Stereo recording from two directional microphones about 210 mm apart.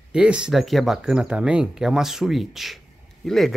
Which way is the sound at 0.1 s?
5° right (ahead or behind).